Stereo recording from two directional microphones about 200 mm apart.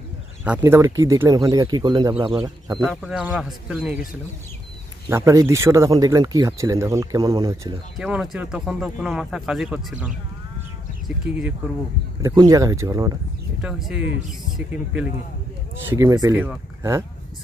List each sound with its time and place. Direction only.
0.6 s speech: 15° right (ahead or behind)
2.8 s speech: centre (ahead or behind)
5.1 s speech: 15° right (ahead or behind)
8.0 s speech: 5° right (ahead or behind)
12.2 s speech: 15° right (ahead or behind)
13.6 s speech: 5° right (ahead or behind)
15.9 s speech: 15° right (ahead or behind)